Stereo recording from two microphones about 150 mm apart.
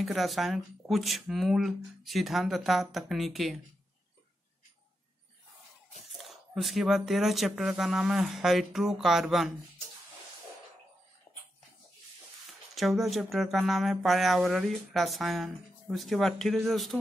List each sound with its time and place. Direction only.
0.0 s speech: centre (ahead or behind)
6.2 s speech: centre (ahead or behind)
11.3 s dog: 30° left (ahead or behind)
12.4 s speech: centre (ahead or behind)